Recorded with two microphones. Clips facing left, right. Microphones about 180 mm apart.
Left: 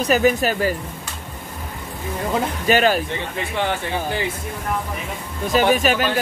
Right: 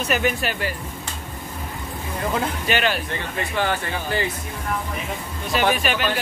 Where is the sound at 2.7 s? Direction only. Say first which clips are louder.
Left 7 dB; 40° left (ahead or behind).